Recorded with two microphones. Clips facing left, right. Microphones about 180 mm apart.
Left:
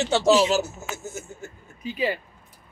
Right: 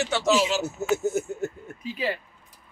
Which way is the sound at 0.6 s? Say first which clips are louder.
Right 6 dB; 60° right (ahead or behind).